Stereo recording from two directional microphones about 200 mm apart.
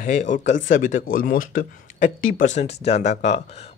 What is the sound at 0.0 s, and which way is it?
Speech, 40° left (ahead or behind).